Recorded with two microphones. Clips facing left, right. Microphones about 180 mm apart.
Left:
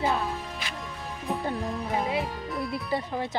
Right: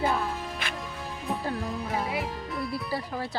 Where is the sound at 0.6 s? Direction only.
55° right (ahead or behind).